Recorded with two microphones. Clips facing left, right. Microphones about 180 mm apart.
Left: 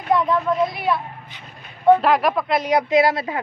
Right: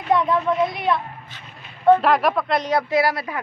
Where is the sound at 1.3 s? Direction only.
15° left (ahead or behind).